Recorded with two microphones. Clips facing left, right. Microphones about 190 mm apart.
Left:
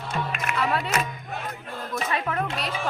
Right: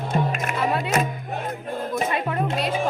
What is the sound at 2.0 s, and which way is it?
Music, 20° right (ahead or behind).